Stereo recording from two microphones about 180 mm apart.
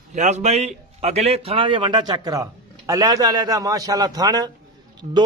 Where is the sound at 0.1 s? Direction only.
40° right (ahead or behind).